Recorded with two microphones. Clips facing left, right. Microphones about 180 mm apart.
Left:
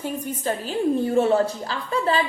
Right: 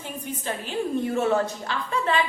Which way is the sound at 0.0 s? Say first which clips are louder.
Left 6 dB; 40° left (ahead or behind).